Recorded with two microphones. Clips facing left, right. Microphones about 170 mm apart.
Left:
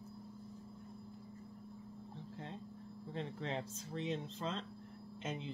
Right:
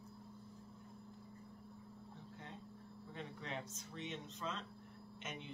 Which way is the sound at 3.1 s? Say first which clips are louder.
Left 6 dB; 30° left (ahead or behind).